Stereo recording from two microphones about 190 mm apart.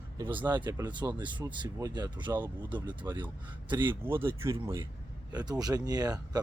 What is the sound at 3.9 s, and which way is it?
Speech, 10° right (ahead or behind).